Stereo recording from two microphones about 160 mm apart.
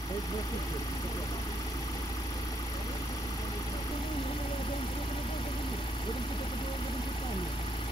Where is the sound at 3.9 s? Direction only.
35° left (ahead or behind).